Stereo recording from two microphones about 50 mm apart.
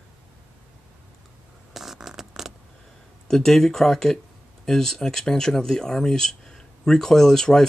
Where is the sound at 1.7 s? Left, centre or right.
Centre.